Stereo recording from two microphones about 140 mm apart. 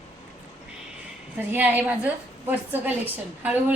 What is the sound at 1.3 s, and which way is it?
A woman's voice, 15° right (ahead or behind).